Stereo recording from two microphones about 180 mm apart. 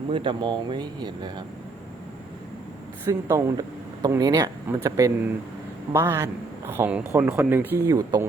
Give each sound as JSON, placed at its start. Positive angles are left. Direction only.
{"t": 0.1, "sound": "speech", "side_deg": -25}
{"t": 3.1, "sound": "speech", "side_deg": -15}